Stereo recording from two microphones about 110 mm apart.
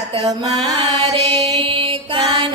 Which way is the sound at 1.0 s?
75° right (ahead or behind).